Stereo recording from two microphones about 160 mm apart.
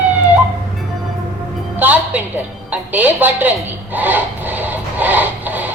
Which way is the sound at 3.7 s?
10° right (ahead or behind).